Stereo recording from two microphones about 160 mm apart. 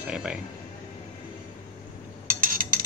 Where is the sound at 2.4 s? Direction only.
60° right (ahead or behind).